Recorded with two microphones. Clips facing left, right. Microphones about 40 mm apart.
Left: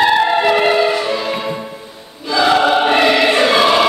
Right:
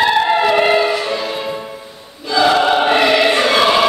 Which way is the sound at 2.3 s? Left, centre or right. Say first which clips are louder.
Even; centre.